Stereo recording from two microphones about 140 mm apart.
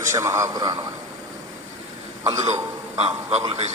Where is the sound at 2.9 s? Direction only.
50° right (ahead or behind).